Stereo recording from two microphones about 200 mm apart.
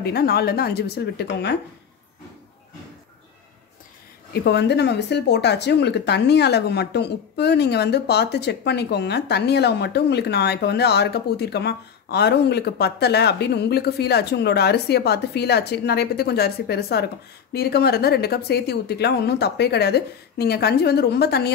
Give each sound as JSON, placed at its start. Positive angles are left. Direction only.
{"t": 0.0, "sound": "speech", "side_deg": 55}
{"t": 4.3, "sound": "speech", "side_deg": 55}